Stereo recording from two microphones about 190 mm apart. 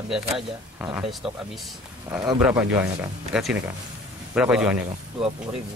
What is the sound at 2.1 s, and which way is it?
Speech, 15° right (ahead or behind).